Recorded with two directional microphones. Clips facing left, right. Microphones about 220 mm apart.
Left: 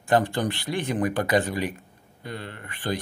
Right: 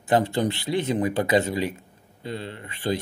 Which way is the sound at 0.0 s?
20° right (ahead or behind).